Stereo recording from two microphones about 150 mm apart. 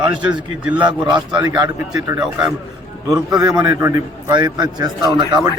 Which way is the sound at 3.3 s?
25° right (ahead or behind).